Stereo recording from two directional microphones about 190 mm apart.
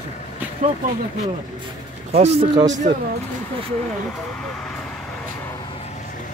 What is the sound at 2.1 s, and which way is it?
Speech, 35° right (ahead or behind).